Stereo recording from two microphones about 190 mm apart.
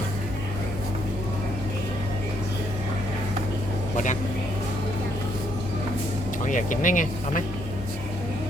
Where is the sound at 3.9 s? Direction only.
40° left (ahead or behind).